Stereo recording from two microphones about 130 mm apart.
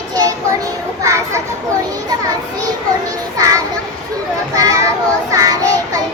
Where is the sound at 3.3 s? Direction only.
25° right (ahead or behind).